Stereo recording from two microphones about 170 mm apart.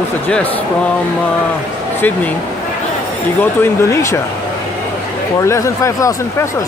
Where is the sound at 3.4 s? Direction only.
15° left (ahead or behind).